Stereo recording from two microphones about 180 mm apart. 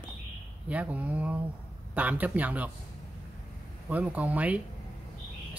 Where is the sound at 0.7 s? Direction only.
10° right (ahead or behind).